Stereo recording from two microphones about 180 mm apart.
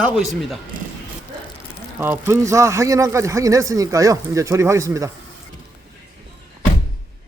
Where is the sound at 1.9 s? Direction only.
10° right (ahead or behind).